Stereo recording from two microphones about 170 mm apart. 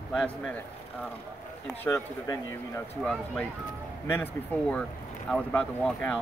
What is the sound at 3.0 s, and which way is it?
Speech, 5° left (ahead or behind).